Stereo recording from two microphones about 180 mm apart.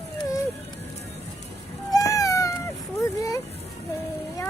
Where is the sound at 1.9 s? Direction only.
20° left (ahead or behind).